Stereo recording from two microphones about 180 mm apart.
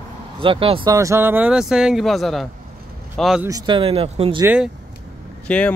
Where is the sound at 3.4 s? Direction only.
20° right (ahead or behind).